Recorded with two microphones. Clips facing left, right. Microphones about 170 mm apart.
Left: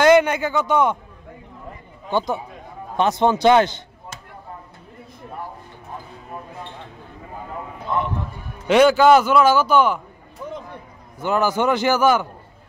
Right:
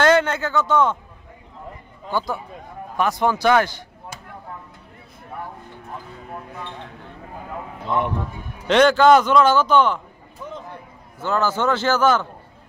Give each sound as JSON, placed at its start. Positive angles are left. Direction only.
{"t": 0.0, "sound": "a man's voice", "side_deg": 15}
{"t": 2.0, "sound": "a man's voice", "side_deg": 20}
{"t": 8.6, "sound": "a man's voice", "side_deg": 10}
{"t": 11.1, "sound": "a man's voice", "side_deg": 15}